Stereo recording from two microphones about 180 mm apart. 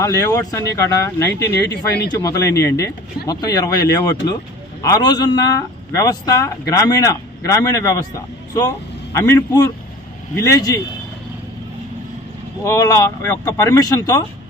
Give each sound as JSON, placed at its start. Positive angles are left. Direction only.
{"t": 0.0, "sound": "speech", "side_deg": 20}
{"t": 1.7, "sound": "speech", "side_deg": 70}
{"t": 2.1, "sound": "a man's voice", "side_deg": 15}
{"t": 9.1, "sound": "a man's voice", "side_deg": 15}
{"t": 12.6, "sound": "a man's voice", "side_deg": 15}